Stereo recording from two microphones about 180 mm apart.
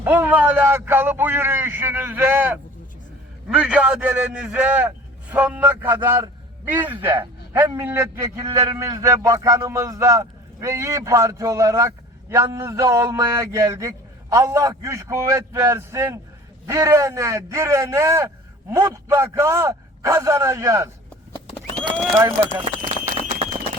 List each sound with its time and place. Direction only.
0.0 s speech: 10° right (ahead or behind)
22.5 s speech: 35° right (ahead or behind)